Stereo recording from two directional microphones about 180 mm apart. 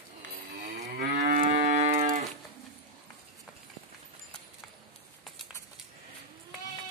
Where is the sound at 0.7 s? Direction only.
45° right (ahead or behind).